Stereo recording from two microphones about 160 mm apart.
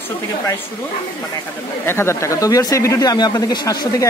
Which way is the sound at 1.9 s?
15° left (ahead or behind).